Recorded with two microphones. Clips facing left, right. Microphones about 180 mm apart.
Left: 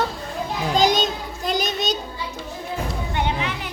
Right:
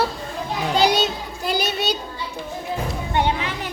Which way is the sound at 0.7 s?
5° right (ahead or behind).